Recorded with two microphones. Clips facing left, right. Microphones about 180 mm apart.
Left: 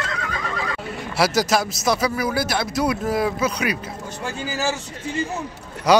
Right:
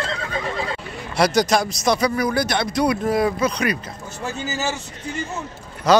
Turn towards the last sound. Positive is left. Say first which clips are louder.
# even
turn(degrees=10)  # may be behind; listen again after turning